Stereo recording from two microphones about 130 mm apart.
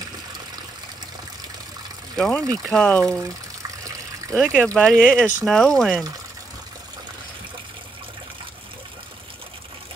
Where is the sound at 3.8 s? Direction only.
25° right (ahead or behind).